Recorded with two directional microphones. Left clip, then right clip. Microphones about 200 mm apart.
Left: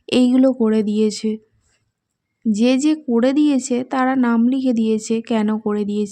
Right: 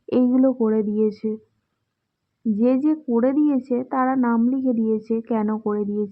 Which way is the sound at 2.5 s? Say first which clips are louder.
Left 3 dB; 30° left (ahead or behind).